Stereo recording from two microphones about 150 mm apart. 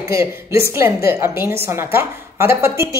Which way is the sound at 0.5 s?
15° right (ahead or behind).